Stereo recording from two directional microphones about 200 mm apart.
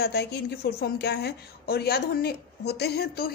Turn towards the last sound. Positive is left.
turn(degrees=55)  # may be behind; listen again after turning